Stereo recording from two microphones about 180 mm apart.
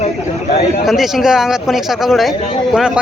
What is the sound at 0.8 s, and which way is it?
Speech, centre (ahead or behind).